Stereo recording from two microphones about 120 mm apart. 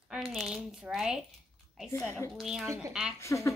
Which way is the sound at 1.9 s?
20° left (ahead or behind).